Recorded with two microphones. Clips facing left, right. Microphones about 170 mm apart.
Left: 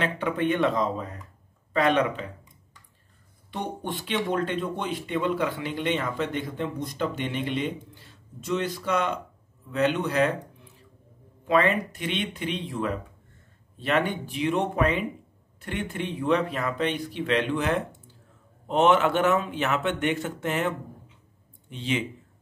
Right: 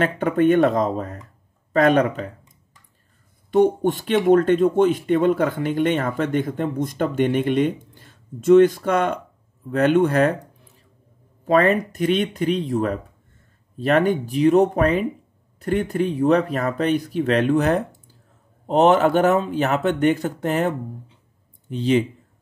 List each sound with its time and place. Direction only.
0.0 s speech: 45° right (ahead or behind)
3.5 s speech: 45° right (ahead or behind)
11.4 s speech: 40° right (ahead or behind)